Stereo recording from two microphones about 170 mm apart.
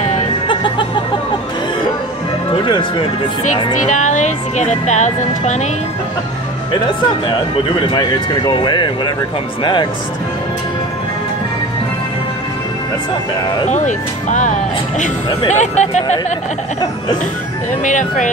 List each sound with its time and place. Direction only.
2.6 s speech: 30° left (ahead or behind)
3.7 s speech: 45° left (ahead or behind)
8.5 s speech: 25° left (ahead or behind)
13.7 s speech: 45° left (ahead or behind)
17.8 s speech: 50° left (ahead or behind)